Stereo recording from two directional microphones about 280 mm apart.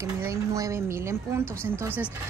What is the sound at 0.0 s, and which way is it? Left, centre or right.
A woman's voice, centre.